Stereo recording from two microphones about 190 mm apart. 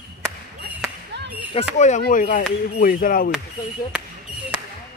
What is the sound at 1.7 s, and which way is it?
Speech, 40° left (ahead or behind).